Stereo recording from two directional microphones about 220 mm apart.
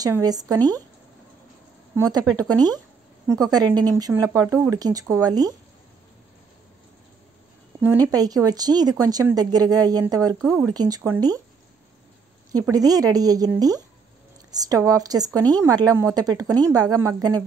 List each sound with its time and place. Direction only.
0.0 s speech: 15° right (ahead or behind)
0.6 s speech: 10° left (ahead or behind)
2.0 s speech: 15° right (ahead or behind)
3.9 s speech: 10° right (ahead or behind)
7.8 s speech: 15° right (ahead or behind)
12.5 s speech: 15° right (ahead or behind)